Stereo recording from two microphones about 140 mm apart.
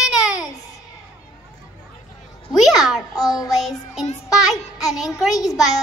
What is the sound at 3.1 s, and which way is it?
Child singing, 25° left (ahead or behind).